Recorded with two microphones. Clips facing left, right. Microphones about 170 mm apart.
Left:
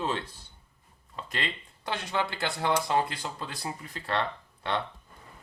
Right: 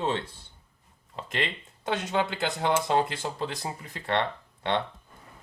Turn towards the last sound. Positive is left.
turn(degrees=-20)  # may be behind; listen again after turning